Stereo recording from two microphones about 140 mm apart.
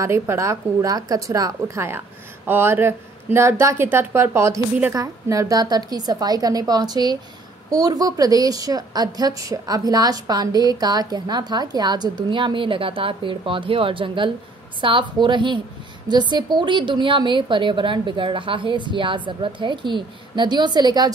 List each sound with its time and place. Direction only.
0.0 s a woman's voice: 20° right (ahead or behind)